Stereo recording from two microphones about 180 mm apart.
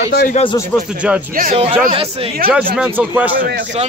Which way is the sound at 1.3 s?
50° right (ahead or behind).